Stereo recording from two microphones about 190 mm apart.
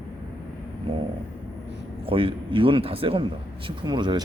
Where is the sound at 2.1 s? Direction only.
25° right (ahead or behind).